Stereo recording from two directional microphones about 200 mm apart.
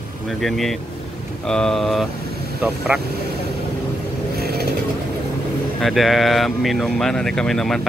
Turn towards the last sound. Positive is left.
turn(degrees=0)  # may be behind; listen again after turning